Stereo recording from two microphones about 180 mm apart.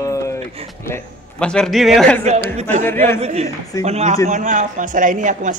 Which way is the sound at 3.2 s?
35° right (ahead or behind).